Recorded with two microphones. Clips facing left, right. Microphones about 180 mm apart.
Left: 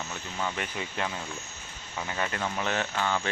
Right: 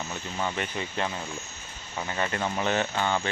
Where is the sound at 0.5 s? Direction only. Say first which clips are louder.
Right 3 dB; 5° left (ahead or behind).